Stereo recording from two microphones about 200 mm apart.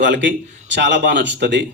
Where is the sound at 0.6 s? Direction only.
65° right (ahead or behind).